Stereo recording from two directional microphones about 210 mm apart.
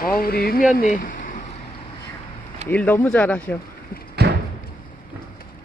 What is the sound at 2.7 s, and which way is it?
Speech, 5° left (ahead or behind).